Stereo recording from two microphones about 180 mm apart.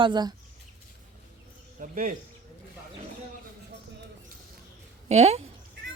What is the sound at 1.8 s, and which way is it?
Speech, 50° right (ahead or behind).